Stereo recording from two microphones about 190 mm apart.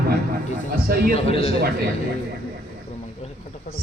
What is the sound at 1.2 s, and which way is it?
Speech, 30° left (ahead or behind).